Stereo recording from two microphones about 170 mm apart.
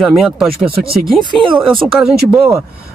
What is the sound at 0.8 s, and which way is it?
Speech, 65° right (ahead or behind).